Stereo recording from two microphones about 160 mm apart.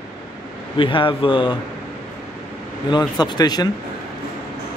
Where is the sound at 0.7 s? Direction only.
30° left (ahead or behind).